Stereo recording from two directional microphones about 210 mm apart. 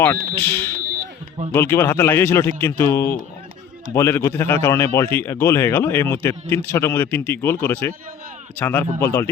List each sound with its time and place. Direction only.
0.3 s speech: 10° left (ahead or behind)